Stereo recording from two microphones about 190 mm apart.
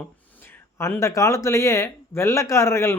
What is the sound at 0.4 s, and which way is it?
Speech, 15° left (ahead or behind).